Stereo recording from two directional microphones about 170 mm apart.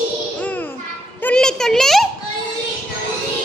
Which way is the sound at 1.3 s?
5° left (ahead or behind).